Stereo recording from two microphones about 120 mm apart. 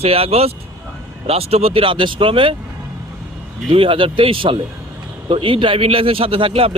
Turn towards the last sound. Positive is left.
turn(degrees=-50)  # may be behind; listen again after turning